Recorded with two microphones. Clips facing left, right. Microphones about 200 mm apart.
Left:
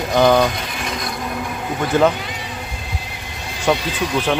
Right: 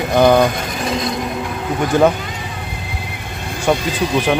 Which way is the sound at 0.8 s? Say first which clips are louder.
Right 8 dB; 25° right (ahead or behind).